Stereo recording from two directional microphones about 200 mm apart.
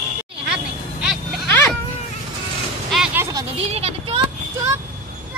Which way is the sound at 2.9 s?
5° right (ahead or behind).